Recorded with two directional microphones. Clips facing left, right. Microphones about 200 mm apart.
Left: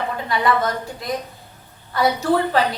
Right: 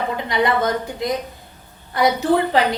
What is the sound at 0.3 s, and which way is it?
Speech, 20° right (ahead or behind).